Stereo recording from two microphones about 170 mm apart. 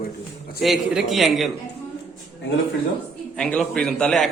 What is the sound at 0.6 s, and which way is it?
Speech, centre (ahead or behind).